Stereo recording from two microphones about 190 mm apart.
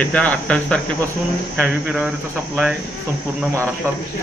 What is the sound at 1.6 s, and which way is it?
Speech, 5° right (ahead or behind).